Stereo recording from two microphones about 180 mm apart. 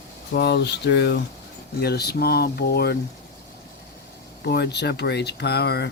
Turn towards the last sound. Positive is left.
turn(degrees=65)  # may be behind; listen again after turning